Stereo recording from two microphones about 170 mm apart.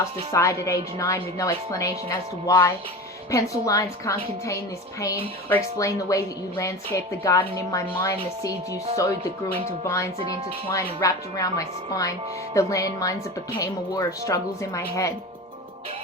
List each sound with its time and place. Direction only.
0.3 s a woman's voice: 20° left (ahead or behind)
5.7 s a woman's voice: 20° left (ahead or behind)